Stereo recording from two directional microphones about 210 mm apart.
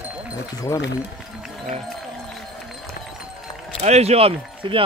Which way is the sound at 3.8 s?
30° right (ahead or behind).